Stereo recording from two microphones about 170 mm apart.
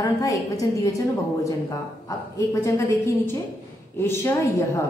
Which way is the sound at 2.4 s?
15° left (ahead or behind).